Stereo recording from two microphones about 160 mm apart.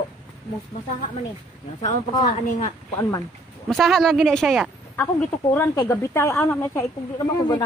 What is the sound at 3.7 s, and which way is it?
Speech, centre (ahead or behind).